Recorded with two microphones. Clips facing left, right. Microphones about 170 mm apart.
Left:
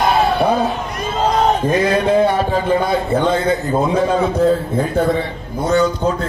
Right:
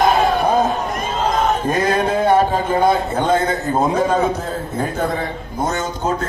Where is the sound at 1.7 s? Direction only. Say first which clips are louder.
Left 3 dB; 50° right (ahead or behind).